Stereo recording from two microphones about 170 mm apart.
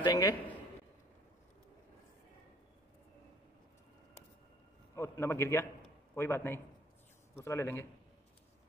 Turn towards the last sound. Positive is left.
turn(degrees=15)  # may be behind; listen again after turning